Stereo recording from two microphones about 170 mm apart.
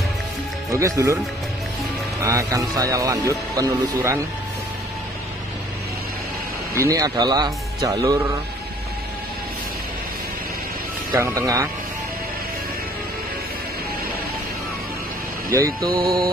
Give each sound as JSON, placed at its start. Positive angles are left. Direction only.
{"t": 0.7, "sound": "speech", "side_deg": -20}
{"t": 2.2, "sound": "speech", "side_deg": -20}
{"t": 6.7, "sound": "speech", "side_deg": -20}
{"t": 11.1, "sound": "speech", "side_deg": -20}
{"t": 15.5, "sound": "speech", "side_deg": -20}